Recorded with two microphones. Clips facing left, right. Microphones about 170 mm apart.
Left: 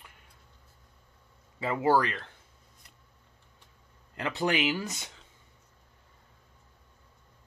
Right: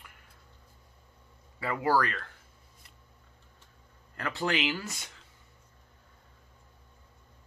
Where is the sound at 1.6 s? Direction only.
20° left (ahead or behind).